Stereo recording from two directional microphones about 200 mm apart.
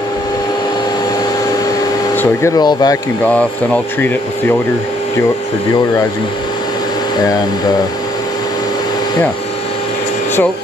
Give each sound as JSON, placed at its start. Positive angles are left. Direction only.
{"t": 2.1, "sound": "speech", "side_deg": 15}
{"t": 3.3, "sound": "speech", "side_deg": 5}